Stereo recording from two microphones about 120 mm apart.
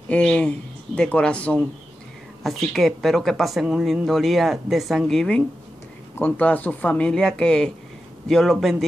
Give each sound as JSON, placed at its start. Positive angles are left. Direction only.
{"t": 0.1, "sound": "speech", "side_deg": 10}
{"t": 6.1, "sound": "speech", "side_deg": 15}